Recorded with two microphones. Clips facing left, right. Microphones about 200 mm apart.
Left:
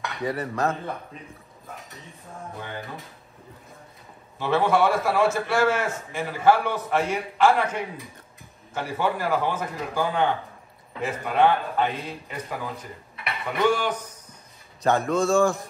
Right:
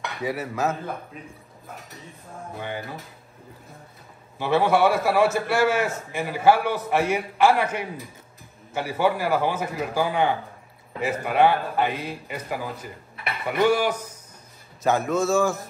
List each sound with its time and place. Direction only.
0.0 s speech: 5° right (ahead or behind)
2.5 s speech: 10° right (ahead or behind)
4.4 s a man's voice: 5° right (ahead or behind)